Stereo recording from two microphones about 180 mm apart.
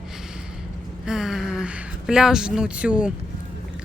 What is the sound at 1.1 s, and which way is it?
Speech, 5° right (ahead or behind).